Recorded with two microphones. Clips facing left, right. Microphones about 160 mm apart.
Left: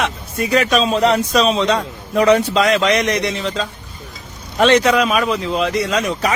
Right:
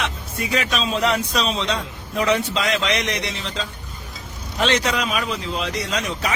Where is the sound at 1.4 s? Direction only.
55° left (ahead or behind).